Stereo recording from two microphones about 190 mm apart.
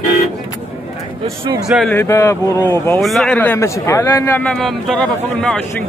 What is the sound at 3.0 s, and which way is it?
A man's voice, centre (ahead or behind).